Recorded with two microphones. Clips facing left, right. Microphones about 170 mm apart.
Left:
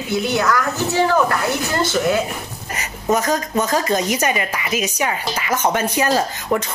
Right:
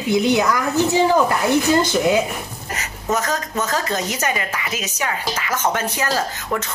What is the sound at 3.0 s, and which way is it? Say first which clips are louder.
A woman's voice: left 4 dB; 15° left (ahead or behind).